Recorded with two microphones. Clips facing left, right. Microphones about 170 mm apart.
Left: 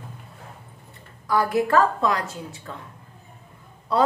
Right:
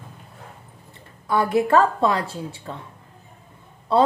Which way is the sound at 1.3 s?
25° right (ahead or behind).